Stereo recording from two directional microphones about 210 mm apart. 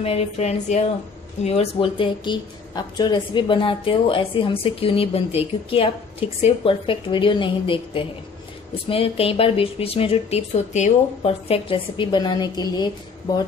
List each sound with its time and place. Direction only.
0.0 s speech: 30° left (ahead or behind)
6.4 s speech: 25° left (ahead or behind)